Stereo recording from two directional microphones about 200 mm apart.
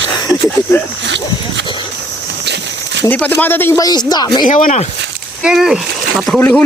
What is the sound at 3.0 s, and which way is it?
Speech, 10° left (ahead or behind).